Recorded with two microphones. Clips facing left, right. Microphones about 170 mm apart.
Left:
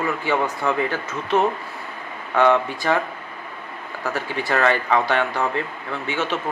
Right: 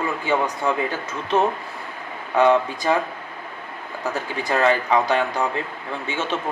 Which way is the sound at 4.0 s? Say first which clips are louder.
Left 1 dB; 20° right (ahead or behind).